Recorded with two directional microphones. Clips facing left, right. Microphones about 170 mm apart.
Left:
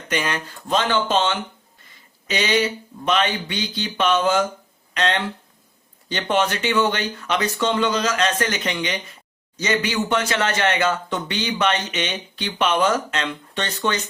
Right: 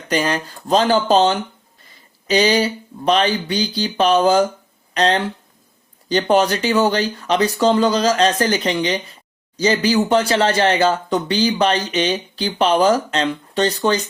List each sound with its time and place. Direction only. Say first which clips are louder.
0.1 s speech: right 5 dB; 35° right (ahead or behind)